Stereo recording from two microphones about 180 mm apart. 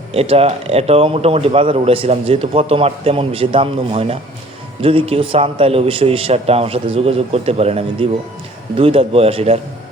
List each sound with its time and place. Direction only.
0.1 s speech: 35° right (ahead or behind)